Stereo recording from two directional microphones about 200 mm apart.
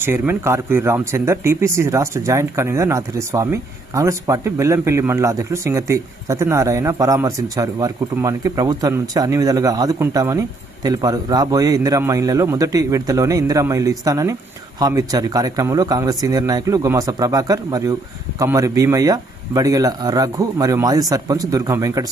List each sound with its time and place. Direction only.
0.0 s speech: 10° right (ahead or behind)